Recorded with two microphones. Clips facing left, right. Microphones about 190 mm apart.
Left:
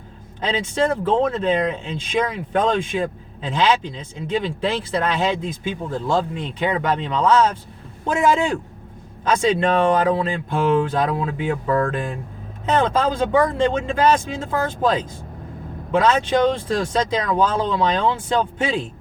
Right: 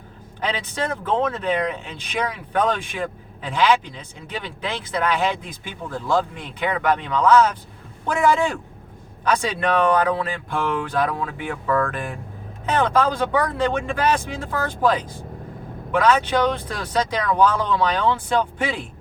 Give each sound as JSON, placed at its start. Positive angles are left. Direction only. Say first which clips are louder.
{"t": 0.4, "sound": "speech", "louder": "left 5 dB", "side_deg": 25}